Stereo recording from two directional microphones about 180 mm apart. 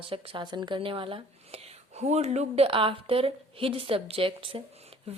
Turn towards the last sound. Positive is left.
turn(degrees=-30)  # may be behind; listen again after turning